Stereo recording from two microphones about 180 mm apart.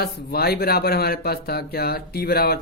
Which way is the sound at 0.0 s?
60° left (ahead or behind).